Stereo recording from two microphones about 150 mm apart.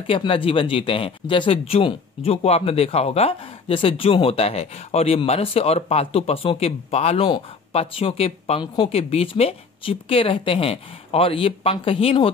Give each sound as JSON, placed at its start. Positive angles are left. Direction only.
{"t": 0.0, "sound": "speech", "side_deg": 35}